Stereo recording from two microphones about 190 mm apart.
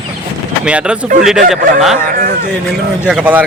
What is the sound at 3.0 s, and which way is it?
Speech, 5° right (ahead or behind).